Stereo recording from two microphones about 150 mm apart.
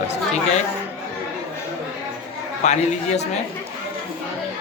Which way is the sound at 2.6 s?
50° left (ahead or behind).